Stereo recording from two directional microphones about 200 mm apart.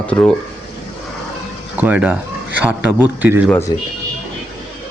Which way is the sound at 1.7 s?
5° right (ahead or behind).